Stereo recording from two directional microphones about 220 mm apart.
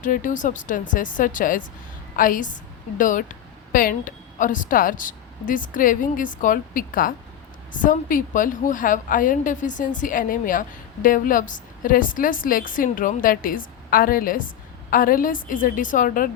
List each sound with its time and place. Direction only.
0.0 s a woman's voice: 35° left (ahead or behind)